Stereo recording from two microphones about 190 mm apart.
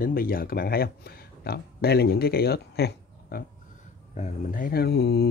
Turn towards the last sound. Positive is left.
turn(degrees=55)  # may be behind; listen again after turning